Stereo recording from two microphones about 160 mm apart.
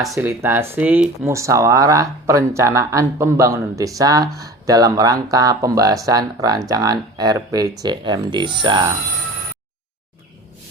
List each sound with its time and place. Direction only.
0.1 s speech: 15° right (ahead or behind)